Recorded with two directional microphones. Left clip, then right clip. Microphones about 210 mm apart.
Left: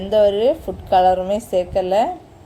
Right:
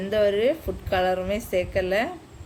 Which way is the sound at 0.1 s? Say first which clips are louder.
Left 7 dB; 10° left (ahead or behind).